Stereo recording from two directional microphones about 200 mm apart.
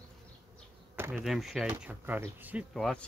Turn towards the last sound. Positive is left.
turn(degrees=0)  # may be behind; listen again after turning